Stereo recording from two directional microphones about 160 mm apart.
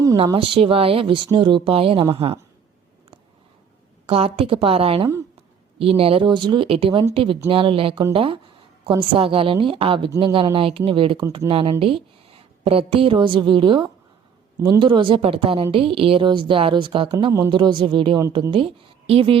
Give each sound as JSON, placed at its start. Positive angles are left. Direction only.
{"t": 0.3, "sound": "speech", "side_deg": -35}
{"t": 4.0, "sound": "speech", "side_deg": -35}